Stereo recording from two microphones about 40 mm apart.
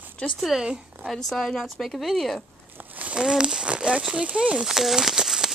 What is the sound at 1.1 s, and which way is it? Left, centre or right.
A woman's voice, centre.